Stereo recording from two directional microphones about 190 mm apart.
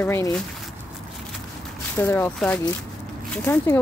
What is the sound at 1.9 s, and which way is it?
Speech, 10° left (ahead or behind).